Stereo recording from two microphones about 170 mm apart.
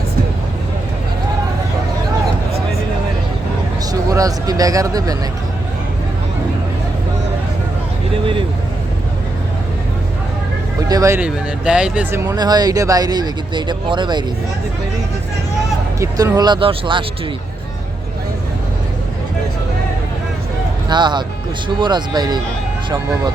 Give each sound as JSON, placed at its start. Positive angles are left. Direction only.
{"t": 4.1, "sound": "speech", "side_deg": -20}
{"t": 10.8, "sound": "speech", "side_deg": -20}
{"t": 11.2, "sound": "speech", "side_deg": -5}
{"t": 12.2, "sound": "speech", "side_deg": -20}
{"t": 16.0, "sound": "speech", "side_deg": -20}
{"t": 20.9, "sound": "speech", "side_deg": -25}